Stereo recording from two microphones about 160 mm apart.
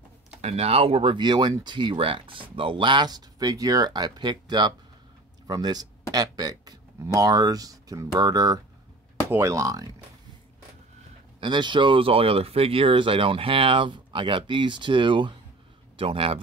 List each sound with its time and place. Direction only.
0.4 s speech: 40° right (ahead or behind); by 10.0 s 20° right (ahead or behind)
11.3 s speech: 30° right (ahead or behind)